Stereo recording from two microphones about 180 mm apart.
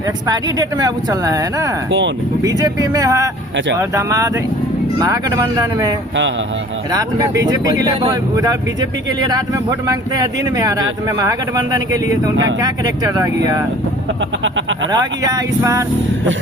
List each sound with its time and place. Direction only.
0.3 s speech: 20° right (ahead or behind)
1.9 s speech: 90° right
2.4 s speech: 20° right (ahead or behind)
14.4 s speech: 90° right
14.9 s speech: 20° right (ahead or behind)